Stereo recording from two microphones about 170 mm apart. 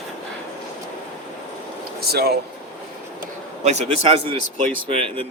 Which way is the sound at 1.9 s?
65° right (ahead or behind).